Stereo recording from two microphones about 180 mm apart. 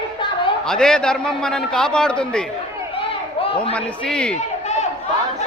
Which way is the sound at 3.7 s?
5° left (ahead or behind).